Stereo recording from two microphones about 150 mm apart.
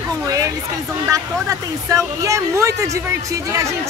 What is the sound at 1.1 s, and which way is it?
Speech, 20° right (ahead or behind).